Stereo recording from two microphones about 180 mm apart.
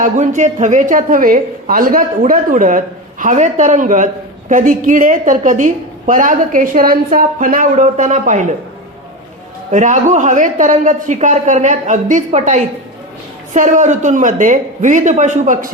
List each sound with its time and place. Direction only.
0.0 s a woman's voice: 40° right (ahead or behind)
9.7 s a woman's voice: 45° right (ahead or behind)